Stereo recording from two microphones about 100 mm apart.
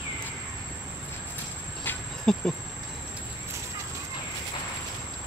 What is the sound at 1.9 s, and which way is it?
Cricket, 20° left (ahead or behind).